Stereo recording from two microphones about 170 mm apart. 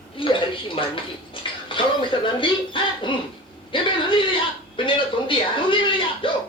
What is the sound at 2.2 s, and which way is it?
Speech, 30° left (ahead or behind).